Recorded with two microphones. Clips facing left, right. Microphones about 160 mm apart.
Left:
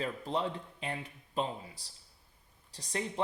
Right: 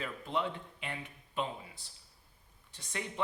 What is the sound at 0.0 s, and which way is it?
Speech, 35° left (ahead or behind).